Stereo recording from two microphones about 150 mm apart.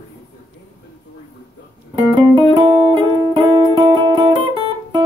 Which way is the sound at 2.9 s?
30° right (ahead or behind).